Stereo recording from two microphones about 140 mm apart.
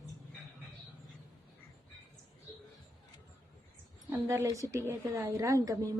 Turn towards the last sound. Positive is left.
turn(degrees=-25)  # may be behind; listen again after turning